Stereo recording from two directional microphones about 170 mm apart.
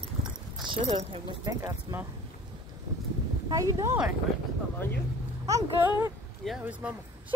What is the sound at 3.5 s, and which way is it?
Speech, 20° right (ahead or behind).